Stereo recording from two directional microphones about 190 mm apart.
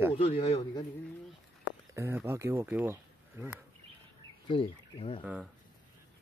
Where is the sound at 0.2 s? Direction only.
30° left (ahead or behind).